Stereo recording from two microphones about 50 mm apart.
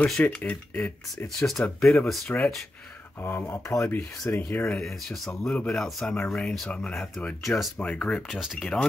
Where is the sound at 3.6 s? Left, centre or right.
Left.